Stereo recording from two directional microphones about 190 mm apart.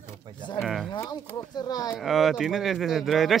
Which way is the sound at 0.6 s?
Centre (ahead or behind).